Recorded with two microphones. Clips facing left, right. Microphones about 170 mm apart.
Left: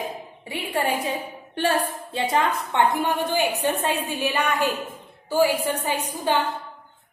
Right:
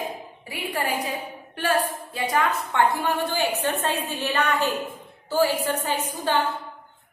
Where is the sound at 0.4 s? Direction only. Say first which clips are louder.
Left 3 dB; 25° left (ahead or behind).